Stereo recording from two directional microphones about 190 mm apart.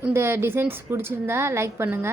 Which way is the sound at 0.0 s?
15° right (ahead or behind).